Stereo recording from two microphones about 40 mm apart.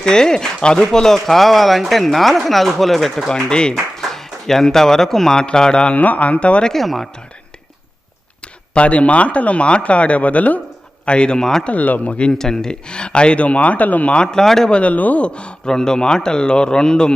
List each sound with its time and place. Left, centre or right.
0.0 s speech: centre
3.2 s a man's voice: left
4.1 s a man's voice: centre
5.9 s speech: left
6.8 s speech: centre
8.7 s speech: left
11.0 s speech: left
11.3 s speech: centre
11.6 s speech: left
12.3 s speech: centre; by 14.1 s left
14.1 s speech: left
14.7 s speech: left
15.2 s a man's voice: left
15.7 s a man's voice: centre